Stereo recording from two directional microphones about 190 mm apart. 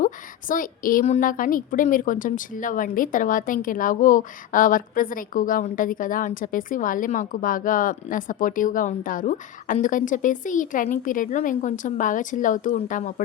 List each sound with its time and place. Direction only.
0.0 s a woman's voice: 45° left (ahead or behind)